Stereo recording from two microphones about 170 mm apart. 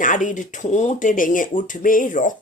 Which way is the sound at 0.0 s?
50° left (ahead or behind).